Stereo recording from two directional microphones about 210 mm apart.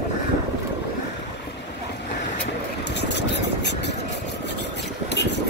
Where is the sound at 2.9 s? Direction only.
55° left (ahead or behind).